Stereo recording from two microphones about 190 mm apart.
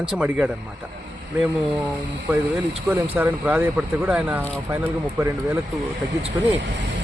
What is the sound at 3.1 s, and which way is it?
Speech, 10° right (ahead or behind).